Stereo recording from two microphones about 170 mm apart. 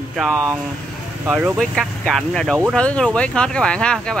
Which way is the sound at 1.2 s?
10° right (ahead or behind).